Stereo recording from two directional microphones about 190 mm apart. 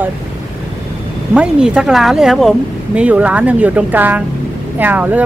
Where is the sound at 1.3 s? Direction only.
5° right (ahead or behind).